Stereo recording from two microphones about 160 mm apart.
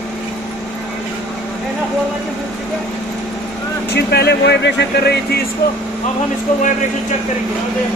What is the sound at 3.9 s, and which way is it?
Speech, 90° left.